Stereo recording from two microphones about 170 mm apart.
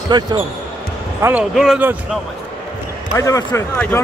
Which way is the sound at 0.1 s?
25° right (ahead or behind).